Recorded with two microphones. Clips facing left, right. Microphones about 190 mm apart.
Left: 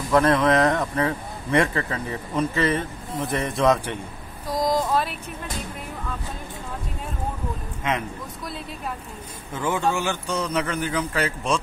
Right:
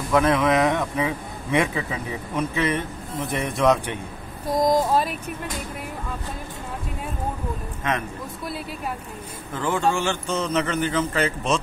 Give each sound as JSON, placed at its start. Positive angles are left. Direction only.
{"t": 0.1, "sound": "speech", "side_deg": 0}
{"t": 4.6, "sound": "speech", "side_deg": -20}
{"t": 9.6, "sound": "a man's voice", "side_deg": 10}